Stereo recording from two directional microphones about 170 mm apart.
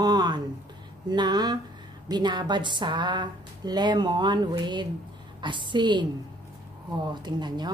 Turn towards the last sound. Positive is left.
turn(degrees=-25)  # may be behind; listen again after turning